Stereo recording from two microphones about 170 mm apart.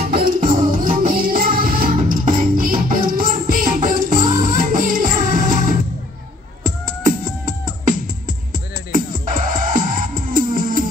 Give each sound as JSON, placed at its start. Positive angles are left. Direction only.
{"t": 0.0, "sound": "music", "side_deg": -55}